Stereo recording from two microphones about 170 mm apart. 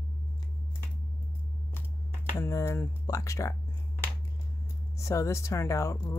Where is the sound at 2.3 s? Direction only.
15° left (ahead or behind).